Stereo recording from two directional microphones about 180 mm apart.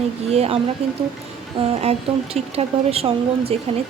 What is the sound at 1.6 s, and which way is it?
Speech, 35° right (ahead or behind).